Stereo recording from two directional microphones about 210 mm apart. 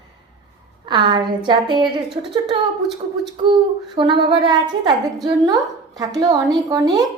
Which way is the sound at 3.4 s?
25° right (ahead or behind).